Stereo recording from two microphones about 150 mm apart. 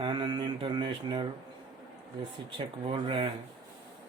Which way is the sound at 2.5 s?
35° right (ahead or behind).